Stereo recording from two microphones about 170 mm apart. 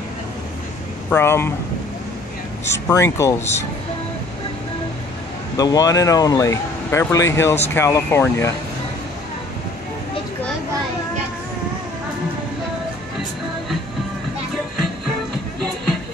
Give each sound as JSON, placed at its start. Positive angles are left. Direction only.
{"t": 1.1, "sound": "speech", "side_deg": 15}
{"t": 2.7, "sound": "speech", "side_deg": 15}
{"t": 5.6, "sound": "speech", "side_deg": 20}